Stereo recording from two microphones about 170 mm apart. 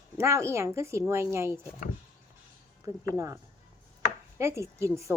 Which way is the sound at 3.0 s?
20° right (ahead or behind).